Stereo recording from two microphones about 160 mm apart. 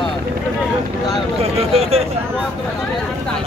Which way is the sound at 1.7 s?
40° right (ahead or behind).